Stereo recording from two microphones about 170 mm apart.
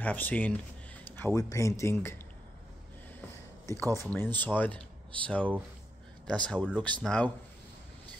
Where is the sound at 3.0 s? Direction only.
10° left (ahead or behind).